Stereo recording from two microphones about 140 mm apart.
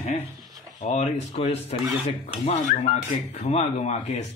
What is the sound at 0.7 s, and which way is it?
Speech, 55° left (ahead or behind).